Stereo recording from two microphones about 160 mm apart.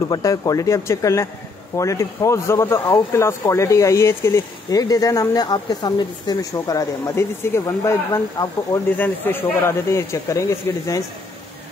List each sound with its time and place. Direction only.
0.1 s speech: 20° left (ahead or behind)